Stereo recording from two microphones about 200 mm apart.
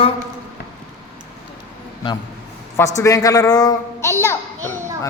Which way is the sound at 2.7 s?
15° left (ahead or behind).